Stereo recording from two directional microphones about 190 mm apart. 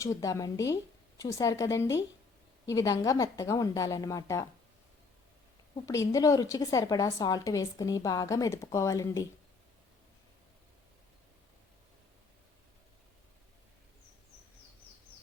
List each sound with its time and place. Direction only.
0.0 s a woman's voice: 15° left (ahead or behind)
5.7 s a woman's voice: 15° left (ahead or behind)